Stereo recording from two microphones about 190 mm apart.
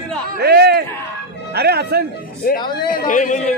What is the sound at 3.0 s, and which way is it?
Speech, 40° left (ahead or behind).